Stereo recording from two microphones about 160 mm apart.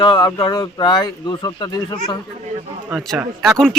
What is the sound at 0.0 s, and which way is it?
Speech, 30° left (ahead or behind).